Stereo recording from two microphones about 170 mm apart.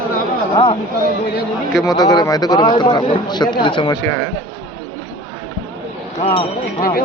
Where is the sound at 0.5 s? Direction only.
30° left (ahead or behind).